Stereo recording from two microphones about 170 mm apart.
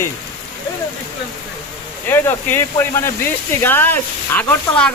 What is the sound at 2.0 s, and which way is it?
Speech, 15° left (ahead or behind).